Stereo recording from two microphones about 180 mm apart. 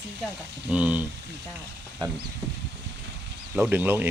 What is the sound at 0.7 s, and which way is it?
Speech, 5° right (ahead or behind).